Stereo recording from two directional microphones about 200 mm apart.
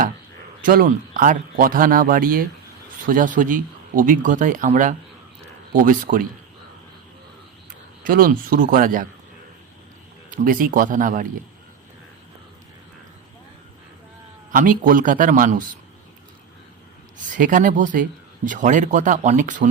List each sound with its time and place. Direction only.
0.6 s speech: 45° right (ahead or behind)
8.0 s speech: 45° right (ahead or behind)
10.3 s speech: 45° right (ahead or behind)
14.5 s speech: 45° right (ahead or behind)
17.3 s speech: 40° right (ahead or behind)